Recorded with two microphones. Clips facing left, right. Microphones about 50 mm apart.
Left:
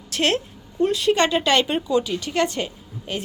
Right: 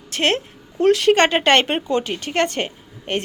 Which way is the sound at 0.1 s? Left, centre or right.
Right.